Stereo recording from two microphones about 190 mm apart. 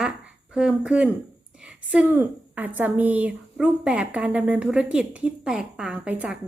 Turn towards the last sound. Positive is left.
turn(degrees=-5)  # may be behind; listen again after turning